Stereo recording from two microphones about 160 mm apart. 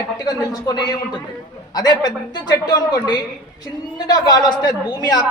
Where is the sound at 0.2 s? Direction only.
25° left (ahead or behind).